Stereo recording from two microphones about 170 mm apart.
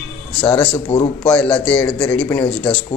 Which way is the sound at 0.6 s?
30° left (ahead or behind).